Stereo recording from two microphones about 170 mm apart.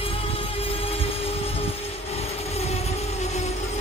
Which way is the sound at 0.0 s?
35° left (ahead or behind).